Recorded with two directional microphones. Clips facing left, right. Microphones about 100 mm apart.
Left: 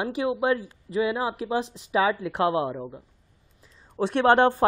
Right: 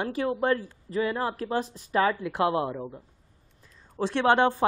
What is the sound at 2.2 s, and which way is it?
Speech, 25° left (ahead or behind).